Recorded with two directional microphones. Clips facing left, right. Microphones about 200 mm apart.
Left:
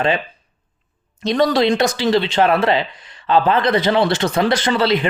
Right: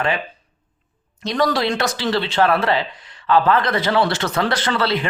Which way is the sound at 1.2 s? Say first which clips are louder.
Left 4 dB; 25° left (ahead or behind).